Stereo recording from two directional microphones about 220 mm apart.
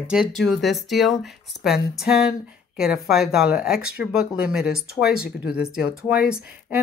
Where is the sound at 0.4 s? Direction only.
Centre (ahead or behind).